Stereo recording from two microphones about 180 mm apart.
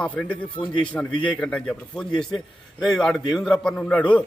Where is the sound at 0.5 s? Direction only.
25° left (ahead or behind).